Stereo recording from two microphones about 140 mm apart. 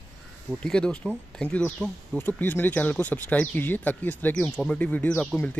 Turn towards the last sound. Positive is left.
turn(degrees=5)  # may be behind; listen again after turning